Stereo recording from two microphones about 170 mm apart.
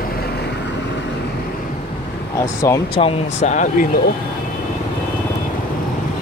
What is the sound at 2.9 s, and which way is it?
Speech, 35° left (ahead or behind).